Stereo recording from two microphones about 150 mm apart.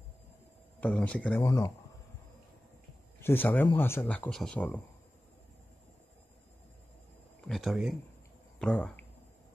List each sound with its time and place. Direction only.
0.7 s speech: 10° left (ahead or behind)
1.4 s speech: 20° left (ahead or behind)
3.2 s speech: 15° left (ahead or behind)
7.4 s speech: centre (ahead or behind)